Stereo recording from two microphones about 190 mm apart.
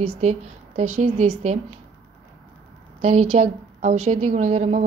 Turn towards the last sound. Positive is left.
turn(degrees=-35)  # may be behind; listen again after turning